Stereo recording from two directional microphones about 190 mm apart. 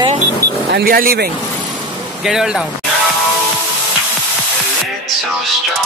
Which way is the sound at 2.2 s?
5° right (ahead or behind).